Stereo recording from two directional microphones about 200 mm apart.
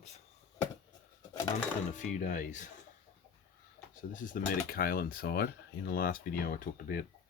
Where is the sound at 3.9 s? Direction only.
40° left (ahead or behind).